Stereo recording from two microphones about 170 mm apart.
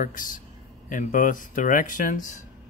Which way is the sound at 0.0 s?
50° left (ahead or behind).